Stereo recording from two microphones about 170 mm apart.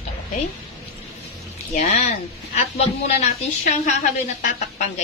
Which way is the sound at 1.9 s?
40° left (ahead or behind).